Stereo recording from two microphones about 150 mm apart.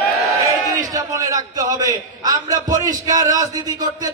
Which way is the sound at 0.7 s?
25° right (ahead or behind).